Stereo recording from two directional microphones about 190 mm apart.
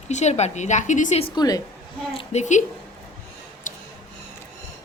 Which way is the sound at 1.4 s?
20° left (ahead or behind).